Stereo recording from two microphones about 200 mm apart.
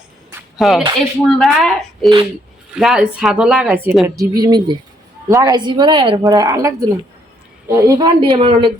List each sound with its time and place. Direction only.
0.3 s a sound: centre (ahead or behind)
1.3 s speech: centre (ahead or behind)
4.1 s speech: 20° right (ahead or behind)